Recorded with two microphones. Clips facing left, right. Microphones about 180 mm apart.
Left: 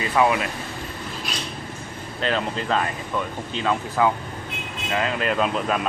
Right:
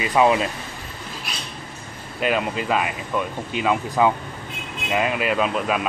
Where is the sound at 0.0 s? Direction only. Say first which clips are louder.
Right 2 dB; 20° right (ahead or behind).